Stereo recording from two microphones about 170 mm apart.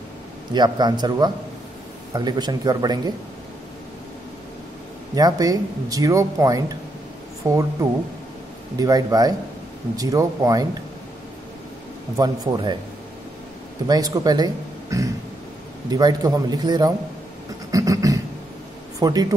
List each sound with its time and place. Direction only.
0.5 s speech: 25° right (ahead or behind)
5.1 s speech: 20° right (ahead or behind)
12.2 s speech: 25° right (ahead or behind)
13.8 s speech: 20° right (ahead or behind)
17.6 s beatboxing: 20° right (ahead or behind)
18.9 s speech: 25° right (ahead or behind)